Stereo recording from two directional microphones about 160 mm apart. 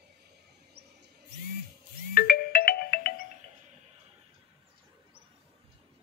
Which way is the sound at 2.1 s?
65° left (ahead or behind).